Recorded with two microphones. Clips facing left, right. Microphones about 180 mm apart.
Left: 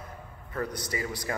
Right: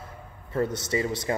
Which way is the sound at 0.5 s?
25° right (ahead or behind).